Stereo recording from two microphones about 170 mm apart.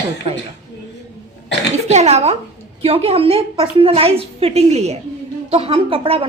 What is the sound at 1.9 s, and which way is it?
A woman's voice, 40° right (ahead or behind).